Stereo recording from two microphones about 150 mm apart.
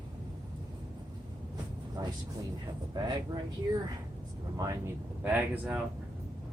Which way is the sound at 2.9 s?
30° right (ahead or behind).